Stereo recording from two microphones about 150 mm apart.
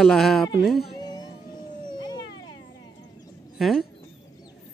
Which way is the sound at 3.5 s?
Centre (ahead or behind).